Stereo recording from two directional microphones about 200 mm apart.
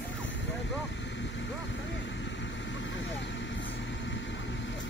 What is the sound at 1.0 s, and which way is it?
Vehicle, 65° left (ahead or behind).